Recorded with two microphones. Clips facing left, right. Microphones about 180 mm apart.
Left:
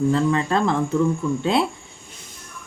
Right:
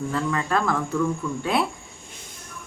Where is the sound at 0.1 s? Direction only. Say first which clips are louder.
Left 5 dB; 25° left (ahead or behind).